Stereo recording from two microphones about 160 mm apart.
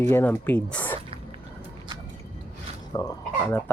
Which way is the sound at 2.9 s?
20° left (ahead or behind).